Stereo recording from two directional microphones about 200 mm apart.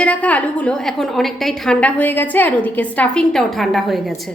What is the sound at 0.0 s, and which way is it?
A woman's voice, 5° left (ahead or behind).